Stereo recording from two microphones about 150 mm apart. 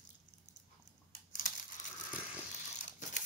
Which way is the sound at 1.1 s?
60° left (ahead or behind).